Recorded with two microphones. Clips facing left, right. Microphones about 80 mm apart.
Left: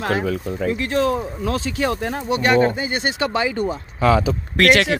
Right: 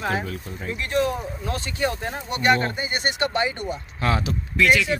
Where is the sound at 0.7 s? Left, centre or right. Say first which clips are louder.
Left 4 dB; left.